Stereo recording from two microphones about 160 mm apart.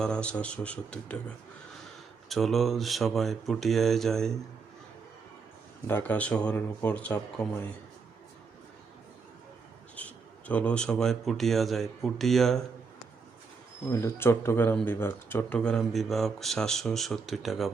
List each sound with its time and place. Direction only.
0.0 s speech: 5° left (ahead or behind)
2.3 s speech: centre (ahead or behind)
5.9 s speech: 10° left (ahead or behind)
9.9 s speech: 10° left (ahead or behind)
13.9 s speech: 15° left (ahead or behind); by 17.7 s centre (ahead or behind)